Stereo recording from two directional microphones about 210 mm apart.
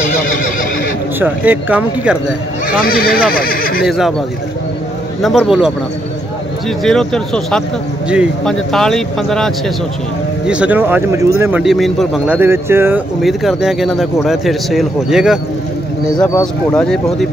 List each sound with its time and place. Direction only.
1.2 s speech: 10° right (ahead or behind)
2.8 s speech: 45° left (ahead or behind)
3.8 s speech: centre (ahead or behind)
5.2 s speech: centre (ahead or behind)
6.8 s speech: 5° left (ahead or behind)
11.6 s speech: centre (ahead or behind)
13.2 s speech: centre (ahead or behind)
16.7 s speech: centre (ahead or behind)